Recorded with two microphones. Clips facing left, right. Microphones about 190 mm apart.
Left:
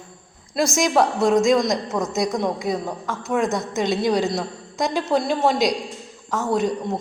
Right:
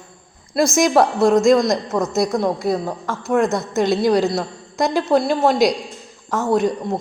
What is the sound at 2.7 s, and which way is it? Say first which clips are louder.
A woman's voice: right 4 dB; 10° right (ahead or behind).